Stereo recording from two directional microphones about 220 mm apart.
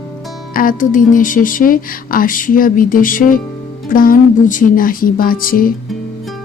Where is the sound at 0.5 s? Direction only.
40° left (ahead or behind).